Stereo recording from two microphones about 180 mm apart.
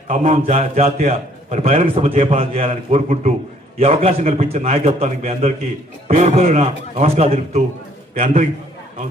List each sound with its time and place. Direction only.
0.1 s a man's voice: 45° right (ahead or behind)
8.1 s a man's voice: 45° right (ahead or behind)